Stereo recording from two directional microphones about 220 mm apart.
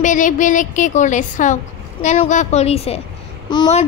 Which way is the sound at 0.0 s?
35° left (ahead or behind).